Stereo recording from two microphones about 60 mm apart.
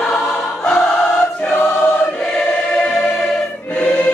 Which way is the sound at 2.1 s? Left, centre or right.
Centre.